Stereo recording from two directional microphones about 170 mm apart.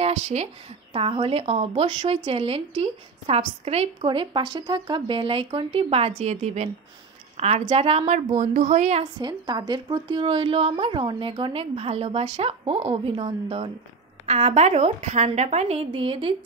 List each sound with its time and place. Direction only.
0.0 s a woman's voice: 40° right (ahead or behind)
9.0 s a woman's voice: 25° right (ahead or behind)